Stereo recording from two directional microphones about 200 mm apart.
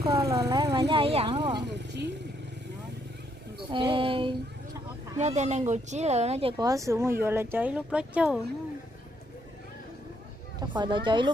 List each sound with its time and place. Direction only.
0.1 s speech: 15° right (ahead or behind)
1.6 s speech: 60° right (ahead or behind)
3.7 s speech: 25° right (ahead or behind)
5.1 s speech: 35° right (ahead or behind)
6.6 s speech: 15° right (ahead or behind)
10.6 s speech: 20° right (ahead or behind)